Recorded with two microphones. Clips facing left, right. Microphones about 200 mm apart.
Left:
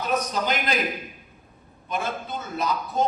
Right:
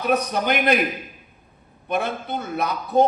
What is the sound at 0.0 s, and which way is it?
Speech, 60° right (ahead or behind).